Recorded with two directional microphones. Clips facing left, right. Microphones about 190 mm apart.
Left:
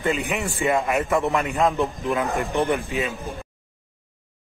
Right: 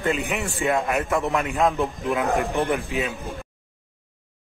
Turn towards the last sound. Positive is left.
turn(degrees=0)  # may be behind; listen again after turning